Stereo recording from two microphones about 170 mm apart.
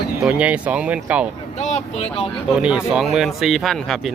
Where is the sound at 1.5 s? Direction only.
40° left (ahead or behind).